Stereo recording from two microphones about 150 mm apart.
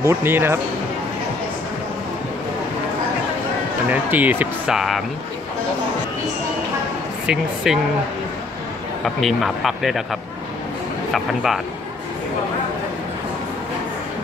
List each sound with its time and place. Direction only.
0.0 s speech: 15° right (ahead or behind)
3.9 s speech: 10° right (ahead or behind)
7.2 s speech: 5° right (ahead or behind)
9.0 s speech: centre (ahead or behind)